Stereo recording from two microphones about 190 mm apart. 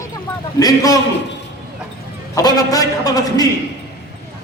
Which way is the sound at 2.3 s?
20° left (ahead or behind).